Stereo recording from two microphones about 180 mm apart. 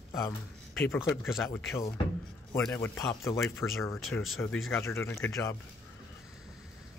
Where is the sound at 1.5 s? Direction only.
15° left (ahead or behind).